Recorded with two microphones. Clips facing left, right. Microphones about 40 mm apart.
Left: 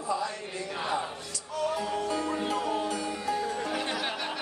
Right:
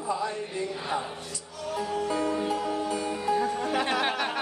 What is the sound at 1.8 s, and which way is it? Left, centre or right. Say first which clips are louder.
Speech: right 2 dB; right.